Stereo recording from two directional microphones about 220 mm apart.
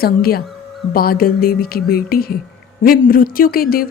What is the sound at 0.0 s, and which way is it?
Speech, 45° left (ahead or behind).